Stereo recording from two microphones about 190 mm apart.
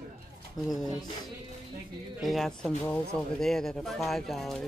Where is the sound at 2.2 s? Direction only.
Centre (ahead or behind).